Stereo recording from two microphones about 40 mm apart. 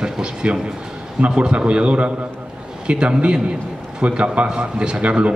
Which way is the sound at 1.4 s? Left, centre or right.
Right.